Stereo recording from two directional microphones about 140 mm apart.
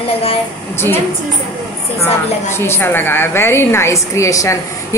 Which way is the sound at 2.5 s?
15° left (ahead or behind).